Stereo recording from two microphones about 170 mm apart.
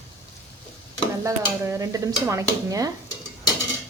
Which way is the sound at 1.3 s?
20° right (ahead or behind).